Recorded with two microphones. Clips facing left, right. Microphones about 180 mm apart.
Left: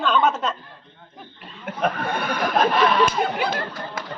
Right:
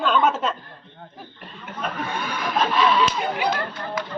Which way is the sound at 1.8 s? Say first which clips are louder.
Left 4 dB; 60° left (ahead or behind).